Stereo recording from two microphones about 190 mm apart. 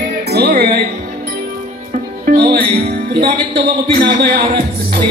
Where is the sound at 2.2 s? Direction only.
55° right (ahead or behind).